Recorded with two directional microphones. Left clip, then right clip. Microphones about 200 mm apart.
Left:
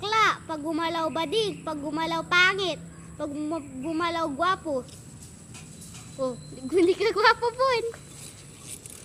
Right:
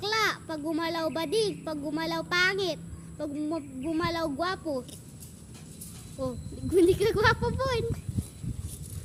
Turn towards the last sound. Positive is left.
turn(degrees=-15)  # may be behind; listen again after turning